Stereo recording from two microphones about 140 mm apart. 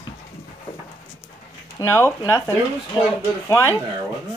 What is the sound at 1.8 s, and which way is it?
Speech, 25° left (ahead or behind).